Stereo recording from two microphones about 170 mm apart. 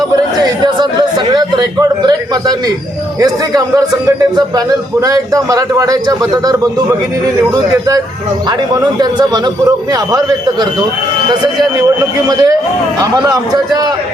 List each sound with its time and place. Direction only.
0.6 s a sound: 25° right (ahead or behind)
3.2 s a man's voice: 20° right (ahead or behind)
12.3 s a man's voice: 20° right (ahead or behind)